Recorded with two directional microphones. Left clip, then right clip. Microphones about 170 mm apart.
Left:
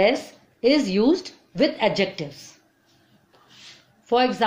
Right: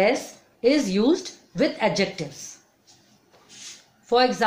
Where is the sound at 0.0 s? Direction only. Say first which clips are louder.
Left 1 dB; 30° left (ahead or behind).